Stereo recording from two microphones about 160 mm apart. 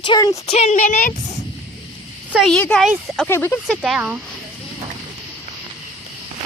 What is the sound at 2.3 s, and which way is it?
Speech, centre (ahead or behind).